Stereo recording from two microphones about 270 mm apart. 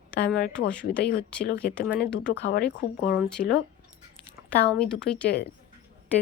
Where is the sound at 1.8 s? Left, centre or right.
Centre.